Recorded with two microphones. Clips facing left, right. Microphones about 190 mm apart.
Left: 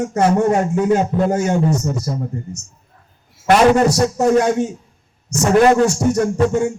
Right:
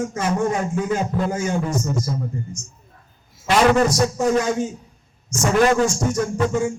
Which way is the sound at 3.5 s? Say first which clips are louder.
Left 4 dB; 65° left (ahead or behind).